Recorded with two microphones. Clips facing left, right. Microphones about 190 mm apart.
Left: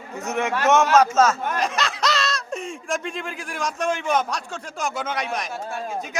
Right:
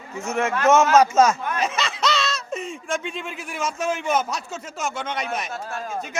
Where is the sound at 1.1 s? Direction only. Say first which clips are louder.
Right 1 dB; 15° right (ahead or behind).